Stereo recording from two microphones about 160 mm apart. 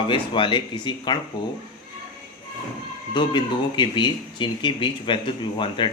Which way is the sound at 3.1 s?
30° left (ahead or behind).